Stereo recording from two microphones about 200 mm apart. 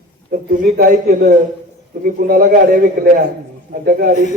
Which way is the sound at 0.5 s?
45° right (ahead or behind).